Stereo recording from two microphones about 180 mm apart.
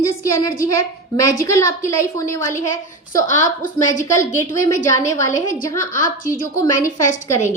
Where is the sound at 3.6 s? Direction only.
45° left (ahead or behind).